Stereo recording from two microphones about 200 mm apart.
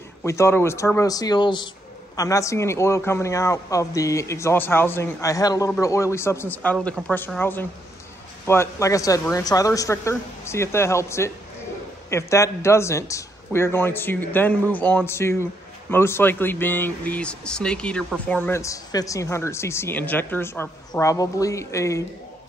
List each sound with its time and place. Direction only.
0.2 s speech: 15° left (ahead or behind)